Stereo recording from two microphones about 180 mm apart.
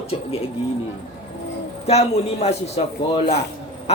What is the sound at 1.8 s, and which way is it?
A man's voice, 35° left (ahead or behind).